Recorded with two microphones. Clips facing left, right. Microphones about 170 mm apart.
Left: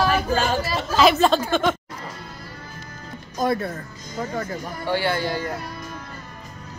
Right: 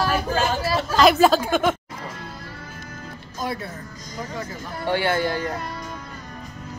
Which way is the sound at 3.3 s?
50° left (ahead or behind).